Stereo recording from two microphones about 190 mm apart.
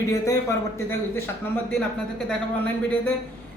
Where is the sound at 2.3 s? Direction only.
5° left (ahead or behind).